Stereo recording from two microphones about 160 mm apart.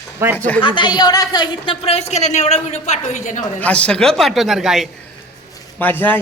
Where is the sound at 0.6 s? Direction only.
30° left (ahead or behind); by 3.4 s 50° left (ahead or behind).